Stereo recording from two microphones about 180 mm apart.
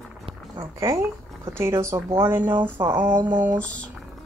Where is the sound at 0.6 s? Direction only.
15° right (ahead or behind).